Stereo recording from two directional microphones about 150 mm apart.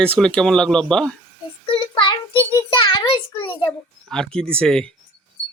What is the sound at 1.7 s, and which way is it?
Child singing, 35° left (ahead or behind).